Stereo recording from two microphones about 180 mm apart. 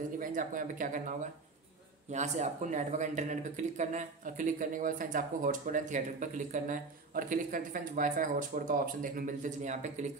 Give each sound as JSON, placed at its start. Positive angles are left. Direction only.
{"t": 0.2, "sound": "speech", "side_deg": -45}